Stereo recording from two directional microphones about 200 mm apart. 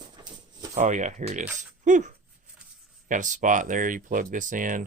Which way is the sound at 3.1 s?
40° right (ahead or behind).